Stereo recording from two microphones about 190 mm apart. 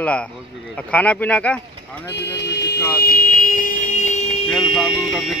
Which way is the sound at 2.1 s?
60° left (ahead or behind).